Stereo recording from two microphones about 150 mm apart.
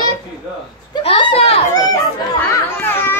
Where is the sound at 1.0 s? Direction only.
40° left (ahead or behind).